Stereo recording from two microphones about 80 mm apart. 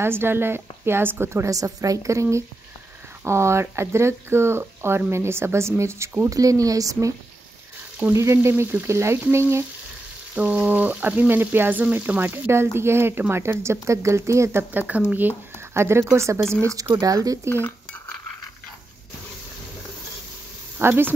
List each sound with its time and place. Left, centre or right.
0.0 s speech: right
3.3 s speech: right
6.3 s speech: right
10.3 s frying: centre; by 12.6 s right
12.7 s speech: right
16.9 s speech: right
17.5 s cutlery: left
20.8 s frying: right